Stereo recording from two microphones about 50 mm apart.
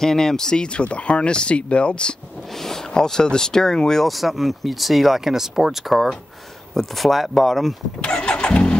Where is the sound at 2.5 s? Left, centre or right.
Centre.